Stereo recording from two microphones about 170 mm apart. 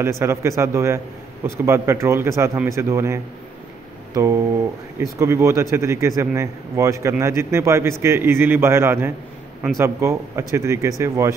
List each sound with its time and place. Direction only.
0.0 s a man's voice: 15° right (ahead or behind)